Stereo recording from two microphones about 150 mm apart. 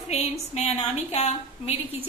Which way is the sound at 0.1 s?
45° left (ahead or behind).